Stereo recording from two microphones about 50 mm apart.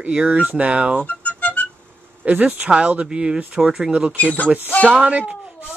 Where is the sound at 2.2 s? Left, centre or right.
Right.